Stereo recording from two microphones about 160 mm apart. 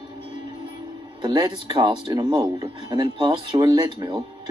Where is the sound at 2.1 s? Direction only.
20° right (ahead or behind).